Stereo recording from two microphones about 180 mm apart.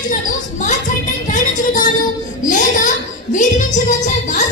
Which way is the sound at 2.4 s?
45° left (ahead or behind).